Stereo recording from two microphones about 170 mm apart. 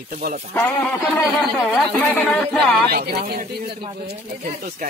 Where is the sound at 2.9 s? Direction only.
65° right (ahead or behind).